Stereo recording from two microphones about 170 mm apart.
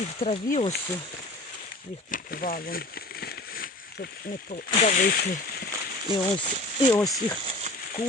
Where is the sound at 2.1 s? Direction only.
55° left (ahead or behind).